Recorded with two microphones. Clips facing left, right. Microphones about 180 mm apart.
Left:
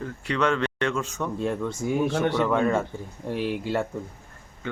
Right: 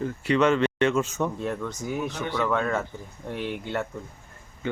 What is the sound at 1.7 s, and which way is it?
Speech, 25° left (ahead or behind).